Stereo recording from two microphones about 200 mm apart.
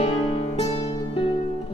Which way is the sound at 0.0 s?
30° left (ahead or behind).